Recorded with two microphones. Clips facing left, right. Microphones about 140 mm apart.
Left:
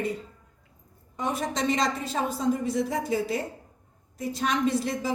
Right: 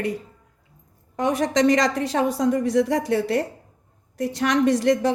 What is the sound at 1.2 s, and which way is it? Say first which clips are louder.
A woman's voice: right 8 dB; 90° right.